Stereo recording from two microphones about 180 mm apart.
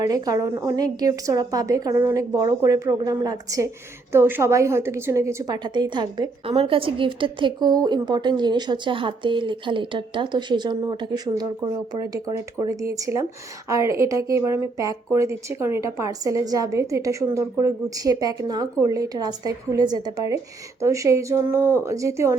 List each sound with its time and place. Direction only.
0.1 s a woman's voice: 20° right (ahead or behind)